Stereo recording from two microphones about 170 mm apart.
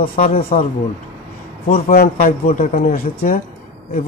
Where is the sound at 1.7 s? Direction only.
55° left (ahead or behind).